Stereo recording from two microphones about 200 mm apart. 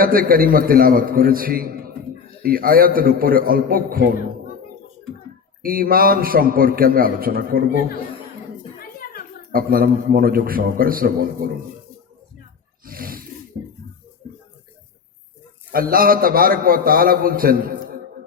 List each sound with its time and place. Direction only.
0.0 s a man's voice: 45° right (ahead or behind)
5.6 s a man's voice: 45° right (ahead or behind)
8.8 s a sound: 45° left (ahead or behind)
9.5 s a man's voice: 45° right (ahead or behind)
12.8 s snort: 45° right (ahead or behind)
13.5 s a sound: 45° right (ahead or behind)
15.7 s a man's voice: 45° right (ahead or behind)